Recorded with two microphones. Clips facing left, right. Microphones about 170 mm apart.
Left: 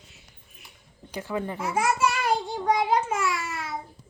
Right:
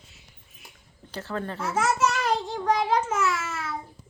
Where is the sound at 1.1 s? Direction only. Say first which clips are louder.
Left 2 dB; 10° left (ahead or behind).